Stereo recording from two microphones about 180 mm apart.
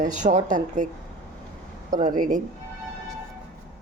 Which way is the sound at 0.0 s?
45° right (ahead or behind).